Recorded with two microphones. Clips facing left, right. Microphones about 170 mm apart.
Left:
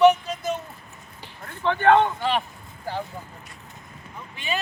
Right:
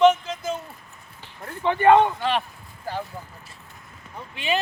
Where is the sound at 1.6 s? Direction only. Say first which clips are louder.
Right 2 dB; 10° right (ahead or behind).